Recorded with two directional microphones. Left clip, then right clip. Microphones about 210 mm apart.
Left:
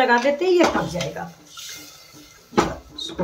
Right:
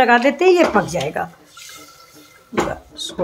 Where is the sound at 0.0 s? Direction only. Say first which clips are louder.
Right 5 dB; 40° right (ahead or behind).